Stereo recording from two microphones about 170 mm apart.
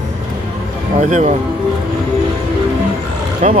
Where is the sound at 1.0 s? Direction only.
45° right (ahead or behind).